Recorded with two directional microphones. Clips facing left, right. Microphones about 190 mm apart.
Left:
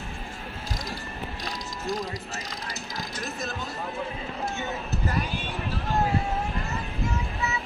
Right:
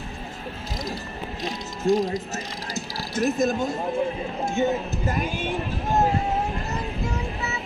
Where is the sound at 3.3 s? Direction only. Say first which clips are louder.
Right 11 dB; 45° right (ahead or behind).